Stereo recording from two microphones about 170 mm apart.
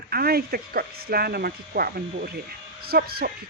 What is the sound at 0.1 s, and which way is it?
A woman's voice, 65° right (ahead or behind).